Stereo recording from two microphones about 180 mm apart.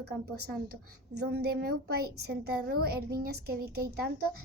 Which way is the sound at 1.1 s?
65° right (ahead or behind).